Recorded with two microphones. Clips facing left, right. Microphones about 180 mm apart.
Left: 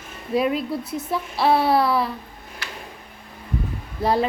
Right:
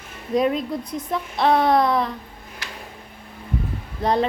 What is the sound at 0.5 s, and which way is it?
A woman's voice, 5° left (ahead or behind).